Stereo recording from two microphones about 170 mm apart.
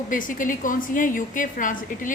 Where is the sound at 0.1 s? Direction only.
50° left (ahead or behind).